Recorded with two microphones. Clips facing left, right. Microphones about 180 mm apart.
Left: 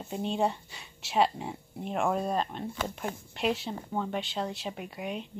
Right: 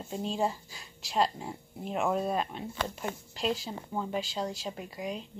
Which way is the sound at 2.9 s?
60° left (ahead or behind).